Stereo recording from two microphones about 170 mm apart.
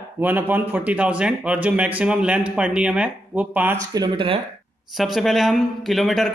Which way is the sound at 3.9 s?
30° right (ahead or behind).